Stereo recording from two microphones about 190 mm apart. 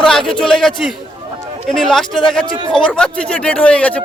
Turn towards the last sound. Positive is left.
turn(degrees=5)  # may be behind; listen again after turning